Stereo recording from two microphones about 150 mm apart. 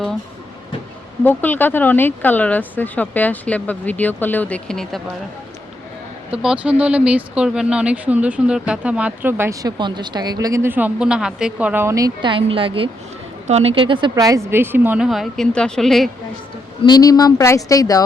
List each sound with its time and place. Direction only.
1.2 s speech: 15° left (ahead or behind)
6.3 s speech: 5° right (ahead or behind); by 14.1 s 35° right (ahead or behind)
14.2 s a woman's voice: 20° right (ahead or behind); by 16.0 s centre (ahead or behind)
16.8 s speech: 25° left (ahead or behind)